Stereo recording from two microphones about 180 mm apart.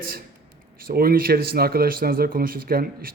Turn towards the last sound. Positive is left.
turn(degrees=-55)  # may be behind; listen again after turning